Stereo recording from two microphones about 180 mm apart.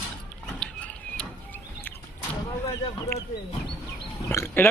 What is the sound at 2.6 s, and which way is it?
Speech, 15° left (ahead or behind).